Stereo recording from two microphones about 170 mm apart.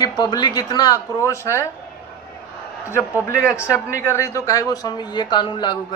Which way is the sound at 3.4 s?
15° left (ahead or behind).